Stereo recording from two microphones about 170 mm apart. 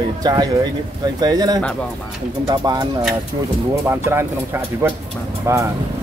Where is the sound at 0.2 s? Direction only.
25° right (ahead or behind).